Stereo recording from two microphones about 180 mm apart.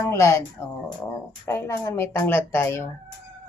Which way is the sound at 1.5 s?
15° left (ahead or behind).